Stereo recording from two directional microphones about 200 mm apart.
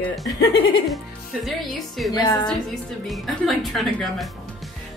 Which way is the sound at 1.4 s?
Centre (ahead or behind).